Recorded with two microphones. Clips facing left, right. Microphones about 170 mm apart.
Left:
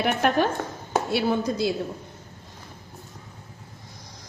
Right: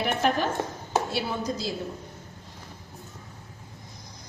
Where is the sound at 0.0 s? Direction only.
60° left (ahead or behind).